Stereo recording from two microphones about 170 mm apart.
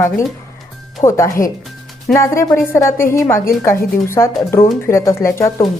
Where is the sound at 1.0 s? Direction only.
15° left (ahead or behind).